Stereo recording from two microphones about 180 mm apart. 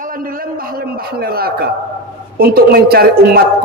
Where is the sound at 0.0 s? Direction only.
50° right (ahead or behind).